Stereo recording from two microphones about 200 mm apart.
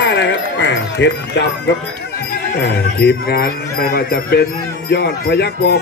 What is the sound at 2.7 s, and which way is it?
Speech, 50° left (ahead or behind).